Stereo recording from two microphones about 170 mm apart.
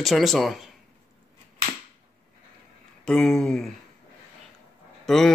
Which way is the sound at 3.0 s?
5° left (ahead or behind).